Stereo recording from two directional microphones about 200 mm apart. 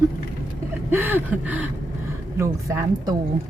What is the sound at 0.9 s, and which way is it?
Speech, 10° right (ahead or behind).